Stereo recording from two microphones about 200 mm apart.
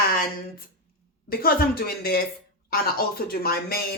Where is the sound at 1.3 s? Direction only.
50° left (ahead or behind).